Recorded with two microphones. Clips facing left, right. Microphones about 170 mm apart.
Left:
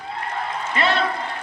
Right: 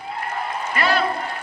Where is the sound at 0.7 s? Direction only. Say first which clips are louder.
Even; 25° left (ahead or behind).